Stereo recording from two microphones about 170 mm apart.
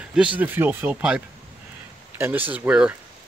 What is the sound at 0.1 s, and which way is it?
Speech, 5° right (ahead or behind).